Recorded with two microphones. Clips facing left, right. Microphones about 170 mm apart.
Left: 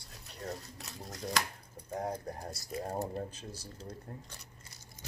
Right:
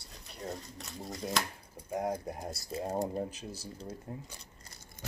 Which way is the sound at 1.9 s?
10° right (ahead or behind).